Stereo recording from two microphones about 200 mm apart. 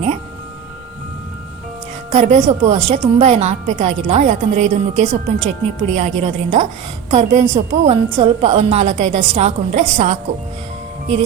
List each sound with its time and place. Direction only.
2.1 s a woman's voice: 35° right (ahead or behind)